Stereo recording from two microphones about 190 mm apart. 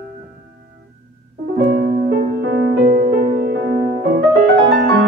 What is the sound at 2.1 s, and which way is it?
Music, 60° right (ahead or behind).